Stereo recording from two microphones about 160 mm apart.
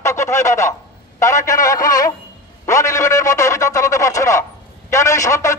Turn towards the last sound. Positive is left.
turn(degrees=20)  # may be behind; listen again after turning